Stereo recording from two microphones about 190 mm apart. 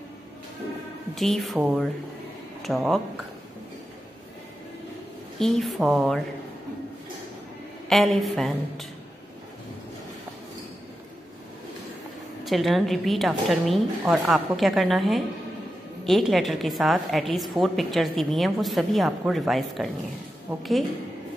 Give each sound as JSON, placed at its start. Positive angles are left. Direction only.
{"t": 1.1, "sound": "a woman's voice", "side_deg": 0}
{"t": 5.4, "sound": "a woman's voice", "side_deg": 0}
{"t": 7.9, "sound": "a woman's voice", "side_deg": 0}
{"t": 12.4, "sound": "a woman's voice", "side_deg": 0}